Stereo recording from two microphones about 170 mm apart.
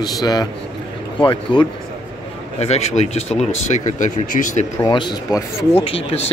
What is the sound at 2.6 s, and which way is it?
Speech, 40° left (ahead or behind).